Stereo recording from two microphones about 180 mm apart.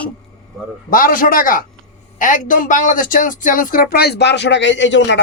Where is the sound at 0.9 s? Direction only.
50° left (ahead or behind).